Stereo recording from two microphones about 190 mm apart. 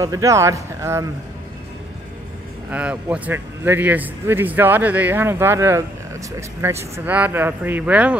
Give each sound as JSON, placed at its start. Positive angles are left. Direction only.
{"t": 0.0, "sound": "speech", "side_deg": -15}
{"t": 2.7, "sound": "speech", "side_deg": -5}